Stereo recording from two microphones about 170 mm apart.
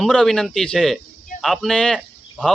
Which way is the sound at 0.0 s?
5° left (ahead or behind).